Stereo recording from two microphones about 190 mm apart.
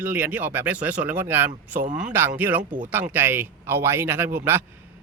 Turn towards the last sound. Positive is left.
turn(degrees=-10)  # may be behind; listen again after turning